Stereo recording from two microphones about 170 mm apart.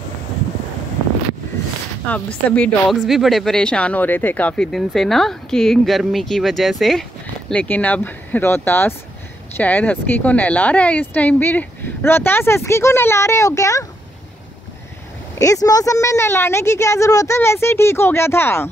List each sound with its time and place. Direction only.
2.5 s speech: 5° left (ahead or behind)
15.3 s speech: 20° left (ahead or behind)